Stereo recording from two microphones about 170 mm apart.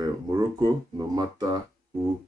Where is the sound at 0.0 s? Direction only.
20° right (ahead or behind).